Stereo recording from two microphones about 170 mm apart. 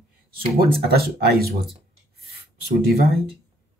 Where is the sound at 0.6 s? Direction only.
65° right (ahead or behind).